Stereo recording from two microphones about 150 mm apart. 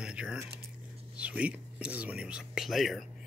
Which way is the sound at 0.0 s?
5° right (ahead or behind).